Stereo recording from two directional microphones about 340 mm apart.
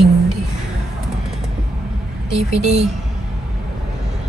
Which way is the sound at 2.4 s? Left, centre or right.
Centre.